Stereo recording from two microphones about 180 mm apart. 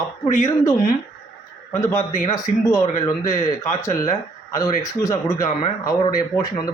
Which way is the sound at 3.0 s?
35° left (ahead or behind).